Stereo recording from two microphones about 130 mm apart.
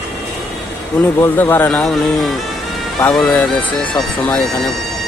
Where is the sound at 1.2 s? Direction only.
15° left (ahead or behind).